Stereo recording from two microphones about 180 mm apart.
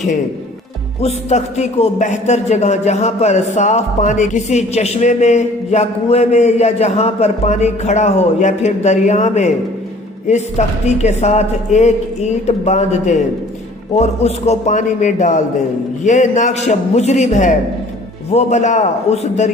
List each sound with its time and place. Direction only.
1.0 s a man's voice: 40° left (ahead or behind)